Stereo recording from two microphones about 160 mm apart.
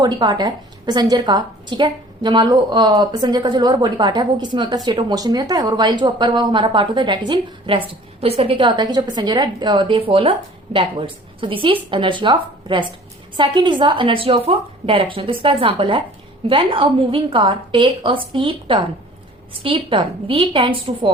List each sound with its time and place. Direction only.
0.0 s a woman's voice: 25° right (ahead or behind)